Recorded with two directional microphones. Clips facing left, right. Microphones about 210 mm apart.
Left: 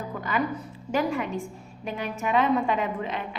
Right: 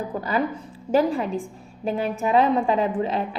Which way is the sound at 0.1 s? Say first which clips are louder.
Right 1 dB; 35° right (ahead or behind).